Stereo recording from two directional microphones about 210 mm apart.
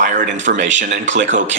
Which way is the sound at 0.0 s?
35° right (ahead or behind).